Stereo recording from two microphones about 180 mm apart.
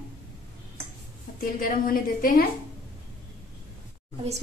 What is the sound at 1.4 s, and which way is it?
A woman's voice, 50° left (ahead or behind).